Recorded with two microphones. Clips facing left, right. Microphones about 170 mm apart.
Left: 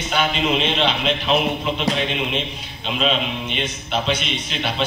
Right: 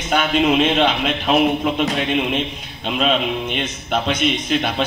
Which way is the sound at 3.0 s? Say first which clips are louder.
Right 3 dB; 50° right (ahead or behind).